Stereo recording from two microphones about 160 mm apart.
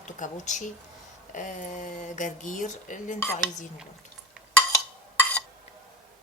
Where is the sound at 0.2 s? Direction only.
50° left (ahead or behind).